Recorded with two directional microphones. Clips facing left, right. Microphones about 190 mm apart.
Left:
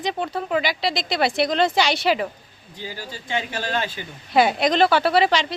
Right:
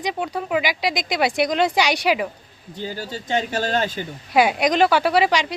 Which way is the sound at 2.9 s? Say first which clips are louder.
Right 4 dB; 40° right (ahead or behind).